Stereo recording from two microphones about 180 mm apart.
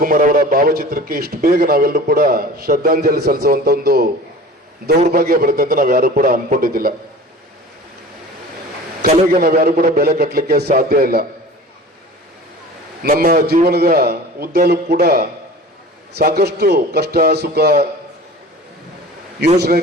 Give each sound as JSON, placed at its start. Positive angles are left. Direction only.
{"t": 0.0, "sound": "a man's voice", "side_deg": -50}
{"t": 9.4, "sound": "a man's voice", "side_deg": -55}
{"t": 13.0, "sound": "a man's voice", "side_deg": -55}
{"t": 19.5, "sound": "a man's voice", "side_deg": -60}